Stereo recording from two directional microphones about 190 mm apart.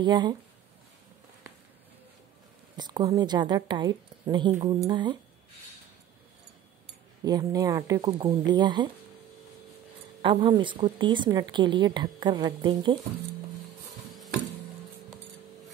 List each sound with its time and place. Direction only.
0.0 s speech: 25° right (ahead or behind)
2.8 s speech: 20° right (ahead or behind)
7.2 s speech: 20° right (ahead or behind)
10.2 s speech: 25° right (ahead or behind)